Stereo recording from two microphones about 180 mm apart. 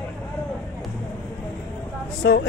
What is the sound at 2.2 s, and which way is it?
Speech, 90° left.